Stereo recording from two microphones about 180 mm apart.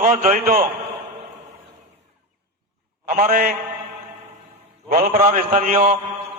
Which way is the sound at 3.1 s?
50° right (ahead or behind).